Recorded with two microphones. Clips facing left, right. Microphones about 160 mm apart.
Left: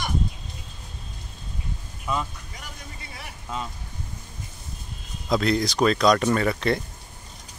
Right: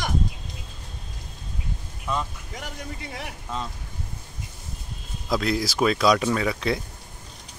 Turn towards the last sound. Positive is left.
turn(degrees=0)  # may be behind; listen again after turning